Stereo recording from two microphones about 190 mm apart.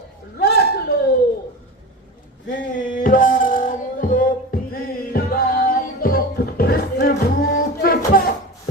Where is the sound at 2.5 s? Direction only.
45° left (ahead or behind).